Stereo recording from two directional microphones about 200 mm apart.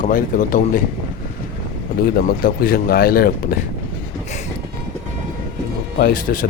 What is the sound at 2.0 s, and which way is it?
Speech, 45° left (ahead or behind).